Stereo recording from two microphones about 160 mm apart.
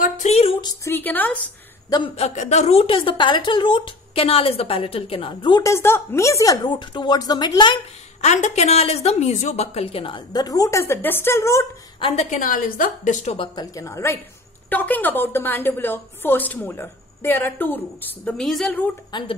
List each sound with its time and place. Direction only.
0.0 s a sound: 45° left (ahead or behind)
0.8 s a woman's voice: 10° left (ahead or behind)
1.9 s a woman's voice: 25° left (ahead or behind)
2.1 s a woman's voice: 45° left (ahead or behind)
5.6 s a woman's voice: 15° left (ahead or behind)
8.2 s a woman's voice: 45° left (ahead or behind); by 11.6 s 15° left (ahead or behind)
12.0 s a woman's voice: 40° left (ahead or behind)
12.4 s a woman's voice: 60° left (ahead or behind); by 13.5 s 45° left (ahead or behind)
13.6 s a woman's voice: 20° left (ahead or behind); by 18.9 s 5° left (ahead or behind)
19.1 s a woman's voice: 25° left (ahead or behind)